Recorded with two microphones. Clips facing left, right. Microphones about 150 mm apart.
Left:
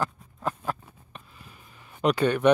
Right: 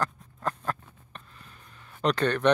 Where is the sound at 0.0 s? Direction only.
5° left (ahead or behind).